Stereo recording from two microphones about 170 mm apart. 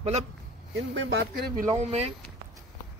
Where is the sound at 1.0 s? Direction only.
80° right.